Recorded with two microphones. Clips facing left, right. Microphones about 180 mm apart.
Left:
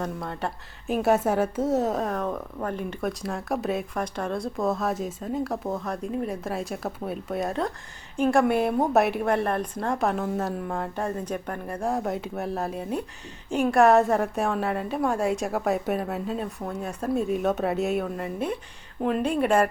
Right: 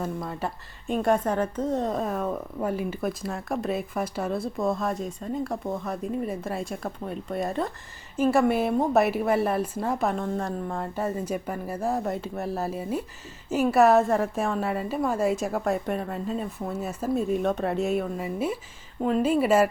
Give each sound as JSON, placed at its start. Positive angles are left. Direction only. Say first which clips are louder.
{"t": 0.0, "sound": "a woman's voice", "louder": "even", "side_deg": 0}